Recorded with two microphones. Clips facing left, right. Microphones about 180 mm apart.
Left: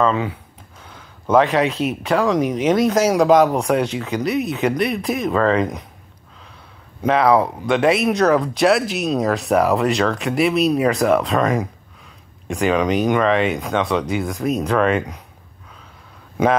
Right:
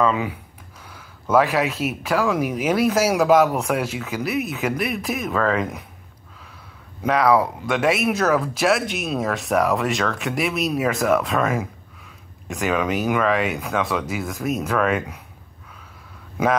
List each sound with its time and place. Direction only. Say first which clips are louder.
0.0 s speech: left 2 dB; 10° right (ahead or behind)
7.2 s speech: left 2 dB; 25° left (ahead or behind)
7.6 s speech: left 4 dB; centre (ahead or behind)
13.4 s speech: left 4 dB; 30° left (ahead or behind)
14.0 s speech: left 4 dB; 5° right (ahead or behind)